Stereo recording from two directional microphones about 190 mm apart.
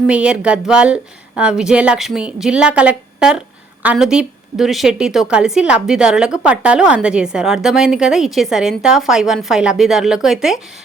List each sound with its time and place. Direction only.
0.1 s a woman's voice: 5° right (ahead or behind)